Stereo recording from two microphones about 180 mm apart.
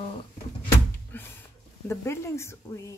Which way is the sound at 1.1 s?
10° left (ahead or behind).